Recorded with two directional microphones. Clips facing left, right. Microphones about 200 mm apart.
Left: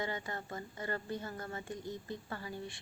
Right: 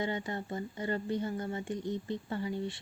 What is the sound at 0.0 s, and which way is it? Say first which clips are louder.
Speech: right 5 dB; 20° right (ahead or behind).